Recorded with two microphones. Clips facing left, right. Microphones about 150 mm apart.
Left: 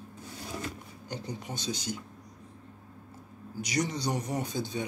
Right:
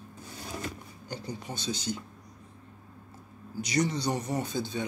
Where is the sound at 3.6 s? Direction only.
10° left (ahead or behind).